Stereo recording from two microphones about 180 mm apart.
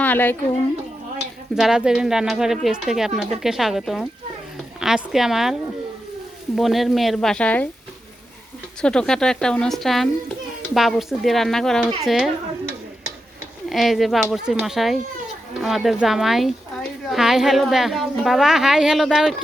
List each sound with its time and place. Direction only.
0.0 s a woman's voice: 10° left (ahead or behind)
1.5 s a woman's voice: 5° right (ahead or behind)
6.6 s a woman's voice: centre (ahead or behind)
8.8 s a woman's voice: 5° left (ahead or behind)
13.7 s a woman's voice: centre (ahead or behind)